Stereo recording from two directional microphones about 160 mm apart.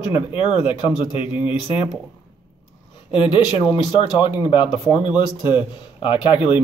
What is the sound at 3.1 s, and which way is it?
Speech, 30° left (ahead or behind).